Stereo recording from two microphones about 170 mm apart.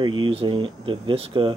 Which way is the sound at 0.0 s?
25° right (ahead or behind).